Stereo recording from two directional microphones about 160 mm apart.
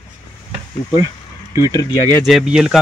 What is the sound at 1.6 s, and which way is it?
Speech, 25° left (ahead or behind).